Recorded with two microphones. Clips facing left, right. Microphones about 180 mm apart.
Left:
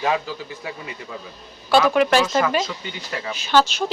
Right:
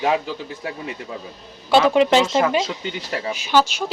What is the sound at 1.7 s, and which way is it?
Speech, 25° right (ahead or behind).